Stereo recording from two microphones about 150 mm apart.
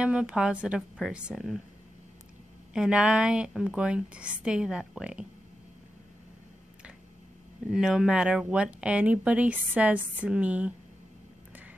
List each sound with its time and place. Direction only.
0.0 s a woman's voice: 5° right (ahead or behind)
2.7 s a woman's voice: 5° right (ahead or behind)
7.7 s speech: 5° right (ahead or behind)